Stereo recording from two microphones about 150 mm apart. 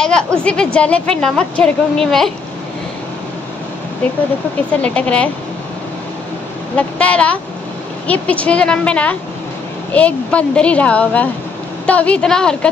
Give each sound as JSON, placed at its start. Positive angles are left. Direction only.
{"t": 0.0, "sound": "a woman's voice", "side_deg": 5}
{"t": 4.8, "sound": "speech", "side_deg": 10}
{"t": 6.8, "sound": "speech", "side_deg": 10}